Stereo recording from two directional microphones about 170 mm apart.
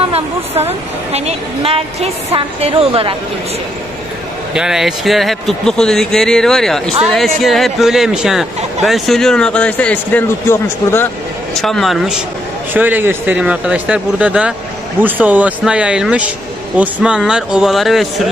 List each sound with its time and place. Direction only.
0.1 s speech: 40° right (ahead or behind)
4.6 s speech: 5° right (ahead or behind); by 11.1 s 15° left (ahead or behind)
11.5 s speech: centre (ahead or behind)